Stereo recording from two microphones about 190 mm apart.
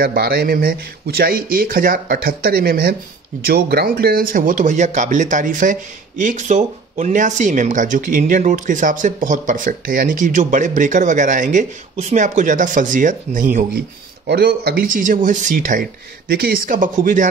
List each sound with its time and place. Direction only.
0.0 s speech: 55° right (ahead or behind)
14.2 s speech: 60° right (ahead or behind); by 15.8 s 45° right (ahead or behind)
16.3 s speech: 55° right (ahead or behind)